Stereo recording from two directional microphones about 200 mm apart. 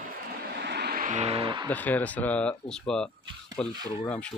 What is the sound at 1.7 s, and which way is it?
Speech, 10° left (ahead or behind).